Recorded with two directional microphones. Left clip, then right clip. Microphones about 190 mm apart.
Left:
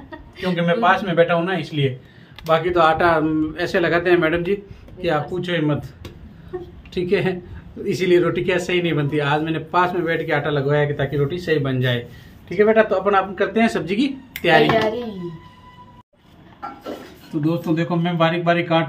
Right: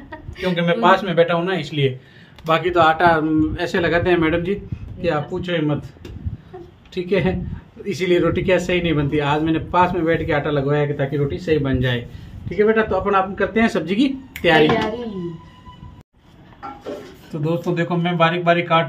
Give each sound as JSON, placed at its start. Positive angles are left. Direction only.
{"t": 0.4, "sound": "a man's voice", "side_deg": -25}
{"t": 2.4, "sound": "a man's voice", "side_deg": -30}
{"t": 2.8, "sound": "speech", "side_deg": -10}
{"t": 6.9, "sound": "speech", "side_deg": 0}
{"t": 17.5, "sound": "a man's voice", "side_deg": -30}